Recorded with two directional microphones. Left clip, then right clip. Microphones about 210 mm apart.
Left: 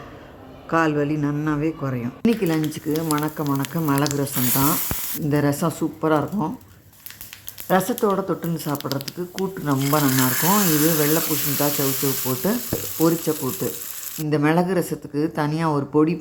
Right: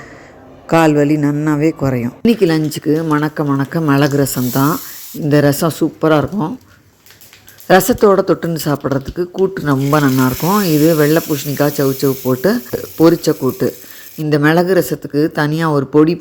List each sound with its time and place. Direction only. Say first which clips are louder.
0.7 s speech: right 9 dB; 25° right (ahead or behind)
7.7 s speech: right 10 dB; 20° right (ahead or behind)